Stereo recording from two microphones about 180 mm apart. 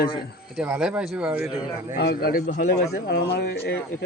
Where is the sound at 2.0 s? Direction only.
60° left (ahead or behind).